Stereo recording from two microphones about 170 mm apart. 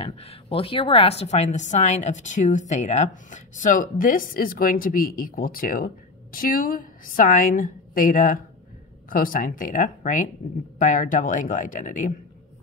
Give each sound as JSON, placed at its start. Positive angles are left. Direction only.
{"t": 0.0, "sound": "a woman's voice", "side_deg": 35}